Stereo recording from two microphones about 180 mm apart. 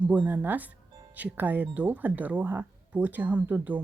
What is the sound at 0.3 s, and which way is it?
Speech, 10° right (ahead or behind).